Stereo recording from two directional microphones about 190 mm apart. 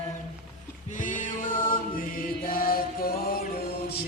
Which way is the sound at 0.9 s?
45° left (ahead or behind).